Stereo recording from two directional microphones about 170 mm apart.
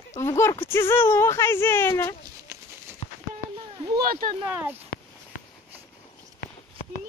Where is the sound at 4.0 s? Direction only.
60° right (ahead or behind).